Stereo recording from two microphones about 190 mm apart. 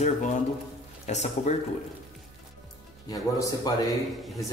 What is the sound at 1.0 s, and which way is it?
Speech, 35° left (ahead or behind).